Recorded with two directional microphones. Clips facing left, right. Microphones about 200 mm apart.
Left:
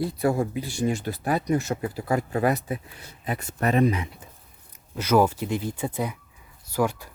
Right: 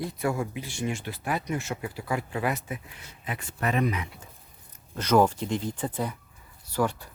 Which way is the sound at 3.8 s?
30° left (ahead or behind).